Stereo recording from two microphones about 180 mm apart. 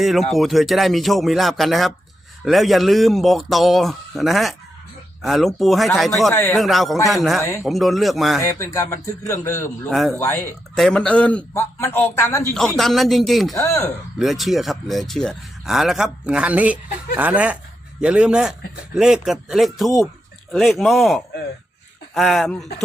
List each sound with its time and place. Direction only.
0.0 s speech: centre (ahead or behind)
6.3 s a man's voice: 10° left (ahead or behind)
6.6 s speech: centre (ahead or behind)
8.4 s a man's voice: 15° left (ahead or behind)
9.9 s speech: centre (ahead or behind)
10.2 s a man's voice: 10° left (ahead or behind)
12.5 s speech: centre (ahead or behind)
13.6 s a man's voice: 15° left (ahead or behind)
14.2 s speech: centre (ahead or behind)